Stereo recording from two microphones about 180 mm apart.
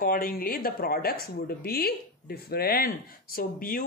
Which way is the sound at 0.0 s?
55° left (ahead or behind).